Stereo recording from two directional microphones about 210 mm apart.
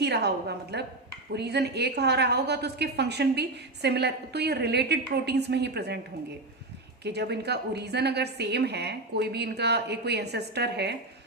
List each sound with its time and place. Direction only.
0.0 s a woman's voice: 50° right (ahead or behind)
7.0 s a woman's voice: 50° right (ahead or behind)